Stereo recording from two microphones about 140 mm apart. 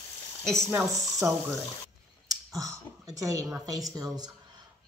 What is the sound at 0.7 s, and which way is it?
Speech, 20° right (ahead or behind).